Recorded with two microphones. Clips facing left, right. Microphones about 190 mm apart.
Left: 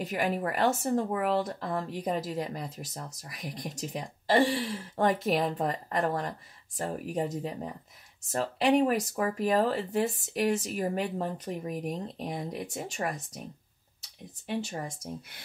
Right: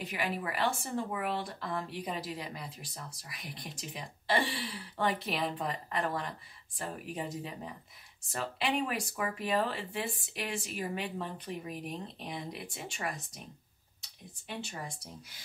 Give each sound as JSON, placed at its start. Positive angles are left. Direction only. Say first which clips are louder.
{"t": 0.0, "sound": "speech", "louder": "left 6 dB", "side_deg": 45}
{"t": 14.9, "sound": "speech", "louder": "left 8 dB", "side_deg": 50}